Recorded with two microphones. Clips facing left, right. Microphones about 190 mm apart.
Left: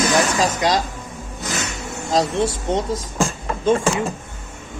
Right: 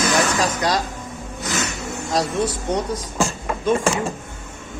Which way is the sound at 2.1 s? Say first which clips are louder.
Left 3 dB; 25° left (ahead or behind).